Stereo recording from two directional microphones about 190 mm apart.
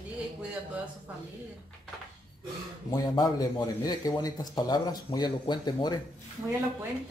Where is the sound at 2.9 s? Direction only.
20° left (ahead or behind).